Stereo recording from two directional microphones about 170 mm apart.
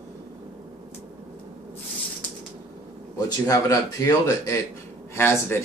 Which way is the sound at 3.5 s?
20° left (ahead or behind).